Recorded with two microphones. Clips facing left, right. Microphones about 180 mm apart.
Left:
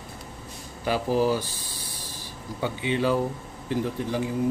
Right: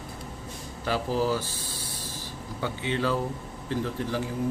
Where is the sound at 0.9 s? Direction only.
15° left (ahead or behind).